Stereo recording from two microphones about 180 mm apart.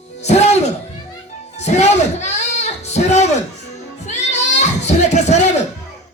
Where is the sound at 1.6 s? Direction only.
40° left (ahead or behind).